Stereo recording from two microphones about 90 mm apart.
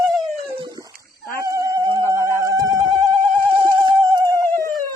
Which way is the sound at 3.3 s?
80° right.